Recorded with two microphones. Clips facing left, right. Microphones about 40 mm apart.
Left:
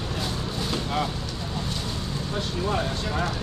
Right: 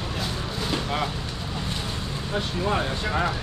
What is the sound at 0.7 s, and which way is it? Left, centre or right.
Vehicle, centre.